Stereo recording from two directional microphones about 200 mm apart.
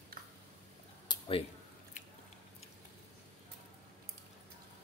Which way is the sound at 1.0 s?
20° left (ahead or behind).